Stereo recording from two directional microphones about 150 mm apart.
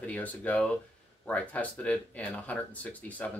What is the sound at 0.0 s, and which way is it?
Speech, 10° left (ahead or behind).